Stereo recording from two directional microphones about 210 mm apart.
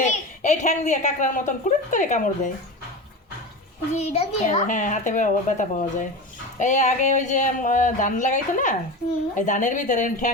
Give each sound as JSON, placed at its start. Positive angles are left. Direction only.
{"t": 0.0, "sound": "a woman's voice", "side_deg": 35}
{"t": 3.9, "sound": "a woman's voice", "side_deg": 30}